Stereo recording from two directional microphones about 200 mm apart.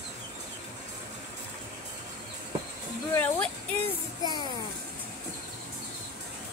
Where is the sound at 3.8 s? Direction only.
20° left (ahead or behind).